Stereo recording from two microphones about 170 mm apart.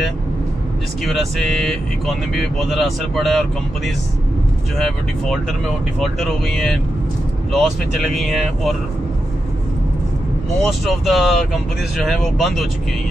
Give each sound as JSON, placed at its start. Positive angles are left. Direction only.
{"t": 1.0, "sound": "speech", "side_deg": 0}
{"t": 10.6, "sound": "speech", "side_deg": 0}